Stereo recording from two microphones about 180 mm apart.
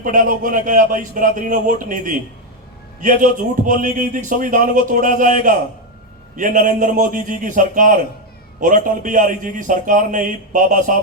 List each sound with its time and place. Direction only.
0.0 s a man's voice: 50° right (ahead or behind)